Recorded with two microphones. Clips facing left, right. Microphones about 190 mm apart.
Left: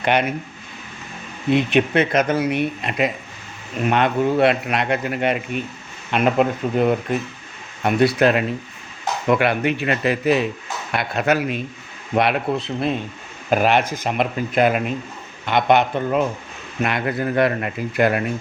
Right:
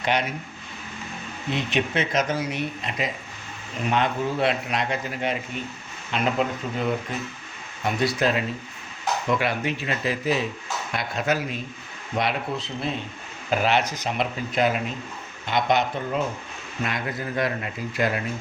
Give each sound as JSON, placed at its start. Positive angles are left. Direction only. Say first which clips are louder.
{"t": 0.0, "sound": "speech", "louder": "left 6 dB", "side_deg": 60}
{"t": 1.5, "sound": "speech", "louder": "left 8 dB", "side_deg": 55}